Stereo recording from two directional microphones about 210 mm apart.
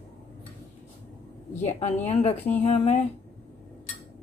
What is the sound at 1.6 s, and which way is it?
A woman's voice, 35° left (ahead or behind).